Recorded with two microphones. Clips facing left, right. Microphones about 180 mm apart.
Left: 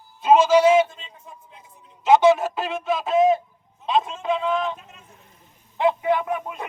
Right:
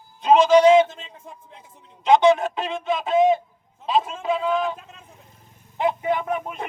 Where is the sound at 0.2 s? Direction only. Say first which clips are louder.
Right 1 dB; 5° left (ahead or behind).